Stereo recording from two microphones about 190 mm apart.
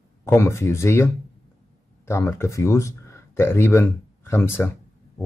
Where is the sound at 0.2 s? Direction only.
15° left (ahead or behind).